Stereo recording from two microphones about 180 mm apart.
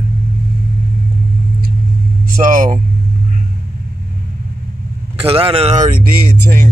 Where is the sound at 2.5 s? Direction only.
50° right (ahead or behind).